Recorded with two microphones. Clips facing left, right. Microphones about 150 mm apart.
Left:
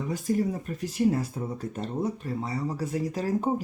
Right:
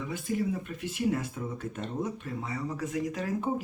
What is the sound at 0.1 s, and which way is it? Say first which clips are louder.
Speech: left 4 dB; 40° left (ahead or behind).